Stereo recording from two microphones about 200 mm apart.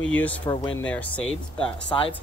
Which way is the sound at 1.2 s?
25° left (ahead or behind).